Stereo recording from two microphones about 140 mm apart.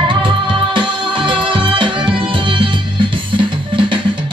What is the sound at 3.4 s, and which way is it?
Music, 35° right (ahead or behind).